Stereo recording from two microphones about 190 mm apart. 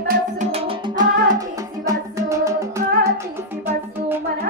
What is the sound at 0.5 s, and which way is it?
Music, 20° right (ahead or behind).